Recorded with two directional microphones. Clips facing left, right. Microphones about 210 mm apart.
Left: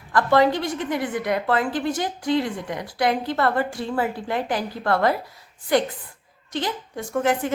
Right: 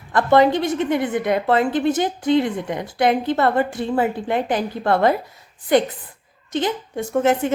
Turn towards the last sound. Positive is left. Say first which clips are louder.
# right 4 dB
turn(degrees=-25)  # may be behind; listen again after turning